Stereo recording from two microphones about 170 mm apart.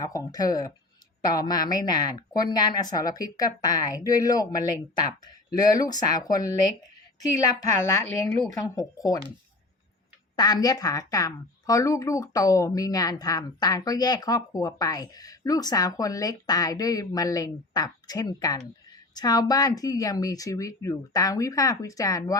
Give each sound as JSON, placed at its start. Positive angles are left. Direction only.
{"t": 0.0, "sound": "a woman's voice", "side_deg": 20}
{"t": 10.3, "sound": "a woman's voice", "side_deg": 25}